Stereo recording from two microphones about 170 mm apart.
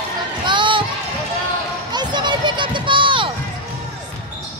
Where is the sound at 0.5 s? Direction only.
30° right (ahead or behind).